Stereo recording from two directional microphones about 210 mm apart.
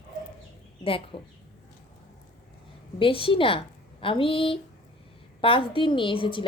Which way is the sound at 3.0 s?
25° left (ahead or behind).